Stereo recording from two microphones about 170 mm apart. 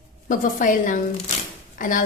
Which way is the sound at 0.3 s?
50° left (ahead or behind).